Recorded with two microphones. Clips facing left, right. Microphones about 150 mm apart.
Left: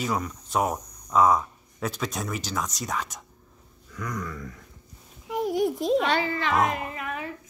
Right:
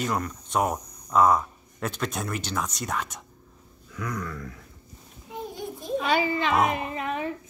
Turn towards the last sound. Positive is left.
turn(degrees=-25)  # may be behind; listen again after turning